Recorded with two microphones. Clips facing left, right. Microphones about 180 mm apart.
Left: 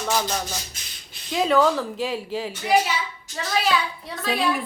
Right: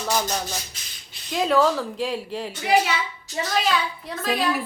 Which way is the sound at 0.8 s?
50° left (ahead or behind).